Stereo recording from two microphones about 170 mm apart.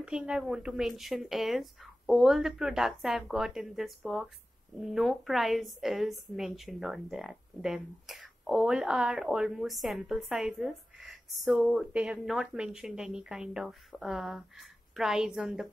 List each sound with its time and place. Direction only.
0.0 s a woman's voice: 5° right (ahead or behind)